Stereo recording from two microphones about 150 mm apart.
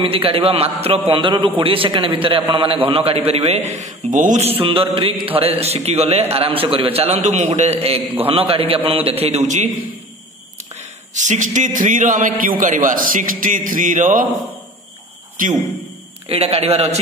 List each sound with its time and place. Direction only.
0.0 s a man's voice: 35° right (ahead or behind)
10.8 s a man's voice: 55° right (ahead or behind)
16.3 s a man's voice: 40° right (ahead or behind)